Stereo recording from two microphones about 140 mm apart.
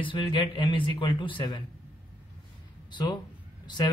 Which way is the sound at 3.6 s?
30° left (ahead or behind).